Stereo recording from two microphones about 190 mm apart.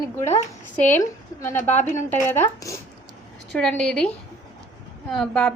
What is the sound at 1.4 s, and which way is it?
Speech, 15° left (ahead or behind).